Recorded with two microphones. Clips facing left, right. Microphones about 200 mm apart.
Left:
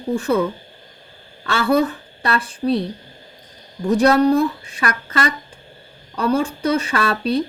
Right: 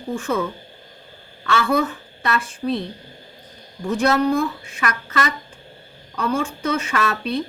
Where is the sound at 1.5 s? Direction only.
35° left (ahead or behind).